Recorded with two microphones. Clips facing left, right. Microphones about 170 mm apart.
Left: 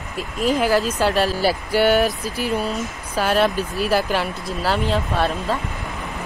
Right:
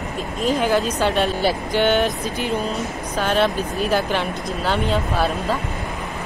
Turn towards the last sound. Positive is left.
turn(degrees=0)  # may be behind; listen again after turning